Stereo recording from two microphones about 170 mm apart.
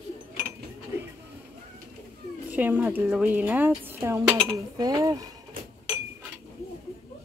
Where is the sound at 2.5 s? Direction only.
10° right (ahead or behind).